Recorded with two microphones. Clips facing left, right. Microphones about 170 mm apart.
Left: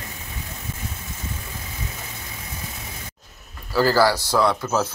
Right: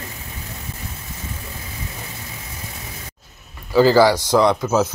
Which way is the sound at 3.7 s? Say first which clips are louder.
Right 5 dB; 20° right (ahead or behind).